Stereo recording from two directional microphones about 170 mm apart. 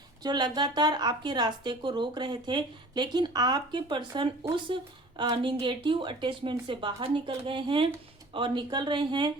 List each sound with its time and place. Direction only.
0.2 s speech: 25° right (ahead or behind)